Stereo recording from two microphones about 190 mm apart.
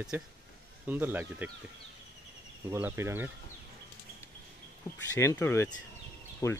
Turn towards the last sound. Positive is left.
turn(degrees=15)  # may be behind; listen again after turning